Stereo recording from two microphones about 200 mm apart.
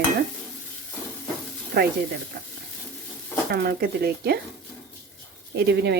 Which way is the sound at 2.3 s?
50° right (ahead or behind).